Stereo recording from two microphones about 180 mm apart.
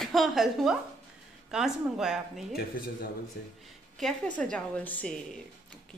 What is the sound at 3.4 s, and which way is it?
Speech, 60° left (ahead or behind).